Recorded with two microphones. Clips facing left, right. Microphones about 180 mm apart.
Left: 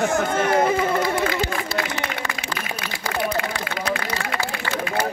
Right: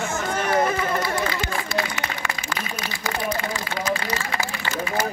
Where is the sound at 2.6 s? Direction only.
65° left (ahead or behind).